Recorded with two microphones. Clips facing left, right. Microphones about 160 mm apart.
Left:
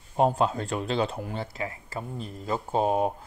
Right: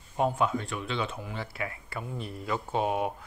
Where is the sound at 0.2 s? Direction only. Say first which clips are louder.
Left 4 dB; 35° left (ahead or behind).